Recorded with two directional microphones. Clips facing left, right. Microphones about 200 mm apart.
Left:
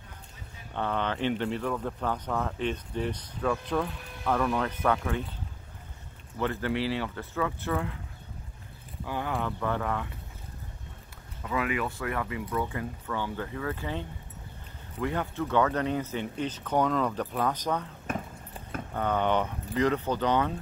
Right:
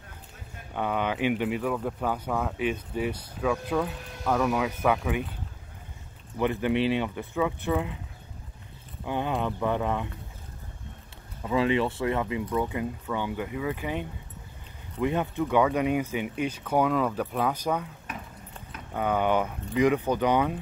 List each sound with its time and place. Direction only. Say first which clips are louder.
0.7 s speech: right 2 dB; 10° right (ahead or behind)
6.3 s speech: right 4 dB; 15° right (ahead or behind)
9.0 s speech: right 3 dB; 20° right (ahead or behind)
11.4 s speech: right 6 dB; 25° right (ahead or behind); by 17.8 s 10° right (ahead or behind)
18.9 s speech: right 2 dB; 10° right (ahead or behind)